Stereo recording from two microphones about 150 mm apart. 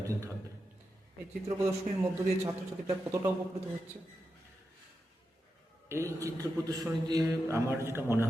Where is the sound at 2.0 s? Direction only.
25° right (ahead or behind).